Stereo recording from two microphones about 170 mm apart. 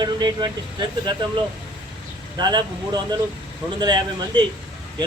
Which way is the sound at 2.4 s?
25° right (ahead or behind).